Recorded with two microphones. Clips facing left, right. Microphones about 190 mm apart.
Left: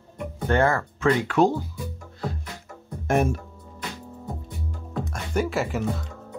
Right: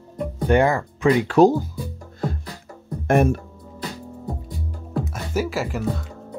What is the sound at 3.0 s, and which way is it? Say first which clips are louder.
Music: right 4 dB; 60° right (ahead or behind).